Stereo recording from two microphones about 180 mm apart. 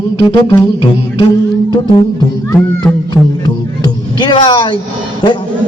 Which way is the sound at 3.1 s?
25° left (ahead or behind).